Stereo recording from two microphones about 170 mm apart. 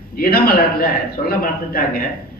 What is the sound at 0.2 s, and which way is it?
Speech, 60° left (ahead or behind).